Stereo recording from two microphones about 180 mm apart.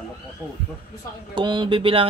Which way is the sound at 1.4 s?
25° right (ahead or behind).